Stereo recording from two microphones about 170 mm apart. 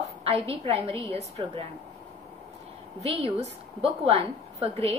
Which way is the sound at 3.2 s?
35° right (ahead or behind).